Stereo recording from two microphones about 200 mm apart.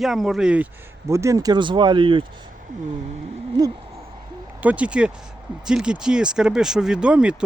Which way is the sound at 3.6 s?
20° right (ahead or behind).